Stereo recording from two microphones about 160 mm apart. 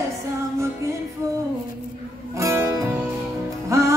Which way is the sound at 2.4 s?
15° right (ahead or behind).